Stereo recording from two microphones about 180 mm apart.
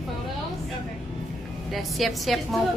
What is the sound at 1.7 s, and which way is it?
Speech, centre (ahead or behind).